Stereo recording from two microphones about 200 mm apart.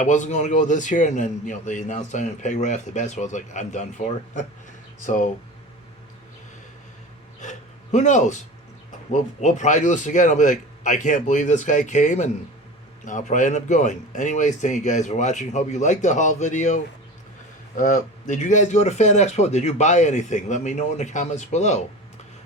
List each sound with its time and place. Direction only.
0.0 s a man's voice: 40° left (ahead or behind)
7.3 s speech: 35° left (ahead or behind)
9.4 s a man's voice: 35° left (ahead or behind)